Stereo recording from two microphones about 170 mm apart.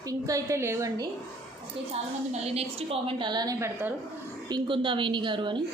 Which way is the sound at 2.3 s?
35° right (ahead or behind).